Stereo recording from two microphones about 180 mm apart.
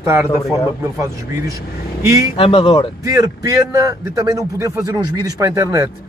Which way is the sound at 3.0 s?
20° right (ahead or behind).